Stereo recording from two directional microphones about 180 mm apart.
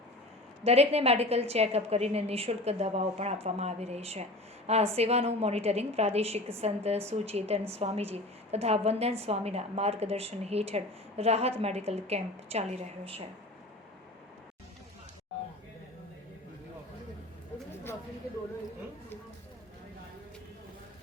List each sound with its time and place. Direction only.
0.6 s a woman's voice: 35° right (ahead or behind)